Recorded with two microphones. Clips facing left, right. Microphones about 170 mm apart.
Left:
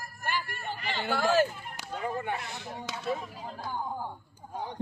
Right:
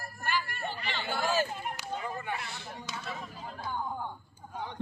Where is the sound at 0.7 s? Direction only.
40° left (ahead or behind).